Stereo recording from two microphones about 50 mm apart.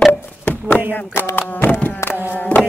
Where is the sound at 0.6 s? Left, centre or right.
Left.